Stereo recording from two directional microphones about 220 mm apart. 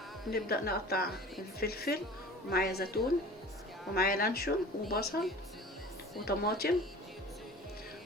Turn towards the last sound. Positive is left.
turn(degrees=45)  # may be behind; listen again after turning